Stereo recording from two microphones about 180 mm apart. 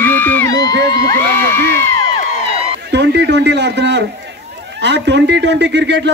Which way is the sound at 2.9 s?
70° right (ahead or behind).